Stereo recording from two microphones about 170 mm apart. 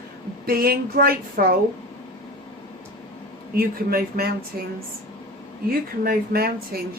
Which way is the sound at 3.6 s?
65° right (ahead or behind).